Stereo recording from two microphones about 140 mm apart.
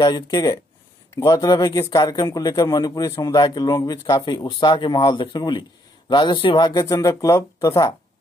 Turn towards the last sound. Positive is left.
turn(degrees=25)  # may be behind; listen again after turning